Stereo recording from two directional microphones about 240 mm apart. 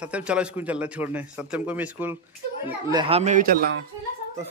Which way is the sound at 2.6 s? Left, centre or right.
Centre.